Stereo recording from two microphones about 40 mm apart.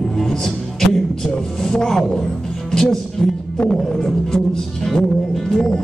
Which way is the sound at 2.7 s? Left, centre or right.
Centre.